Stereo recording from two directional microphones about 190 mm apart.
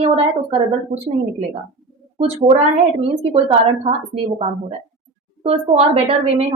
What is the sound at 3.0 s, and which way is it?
Speech, 30° right (ahead or behind).